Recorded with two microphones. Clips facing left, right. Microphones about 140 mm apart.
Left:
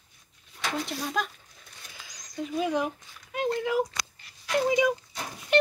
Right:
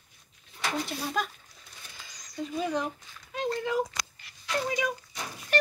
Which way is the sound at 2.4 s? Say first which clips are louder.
Left 3 dB; 10° left (ahead or behind).